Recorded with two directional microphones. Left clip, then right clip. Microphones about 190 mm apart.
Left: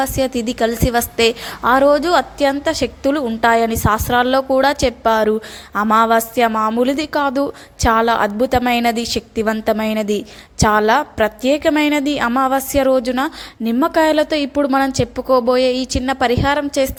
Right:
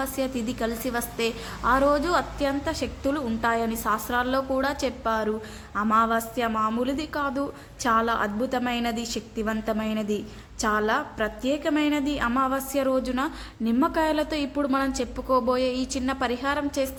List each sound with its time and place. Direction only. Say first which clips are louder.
0.0 s a woman's voice: left 10 dB; 35° left (ahead or behind)